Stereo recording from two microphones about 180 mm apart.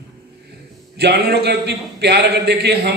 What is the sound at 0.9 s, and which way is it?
A man's voice, 65° right (ahead or behind).